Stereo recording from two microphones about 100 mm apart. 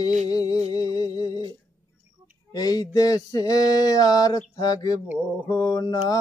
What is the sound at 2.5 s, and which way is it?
Mantra, 40° left (ahead or behind).